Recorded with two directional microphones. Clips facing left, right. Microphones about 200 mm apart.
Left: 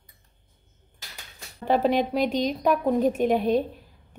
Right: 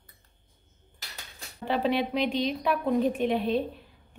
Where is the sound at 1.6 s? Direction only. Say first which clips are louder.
Left 4 dB; 45° left (ahead or behind).